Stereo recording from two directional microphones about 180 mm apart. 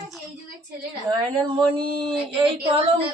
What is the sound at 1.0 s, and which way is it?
A child's voice, 25° right (ahead or behind).